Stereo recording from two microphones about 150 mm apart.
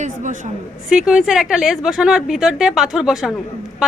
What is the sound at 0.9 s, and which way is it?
A woman's voice, 5° right (ahead or behind).